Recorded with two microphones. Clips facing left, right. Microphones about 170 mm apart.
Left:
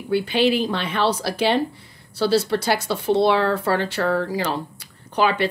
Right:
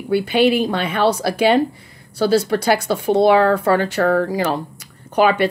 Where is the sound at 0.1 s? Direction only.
50° right (ahead or behind).